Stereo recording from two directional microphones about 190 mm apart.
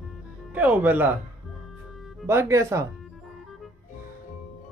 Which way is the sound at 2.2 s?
15° right (ahead or behind).